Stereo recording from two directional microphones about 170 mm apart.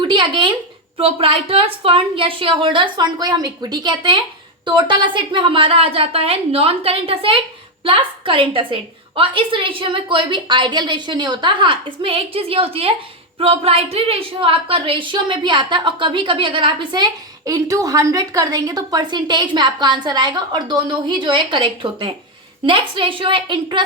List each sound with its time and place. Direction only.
0.0 s a woman's voice: 30° right (ahead or behind)